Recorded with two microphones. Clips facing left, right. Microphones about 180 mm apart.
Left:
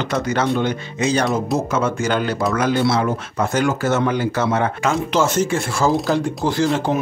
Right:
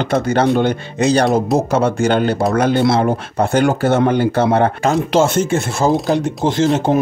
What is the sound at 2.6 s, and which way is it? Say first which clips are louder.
Speech: right 3 dB; 55° right (ahead or behind).